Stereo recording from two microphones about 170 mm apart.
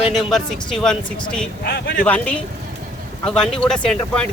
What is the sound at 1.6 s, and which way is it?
Speech, 80° left.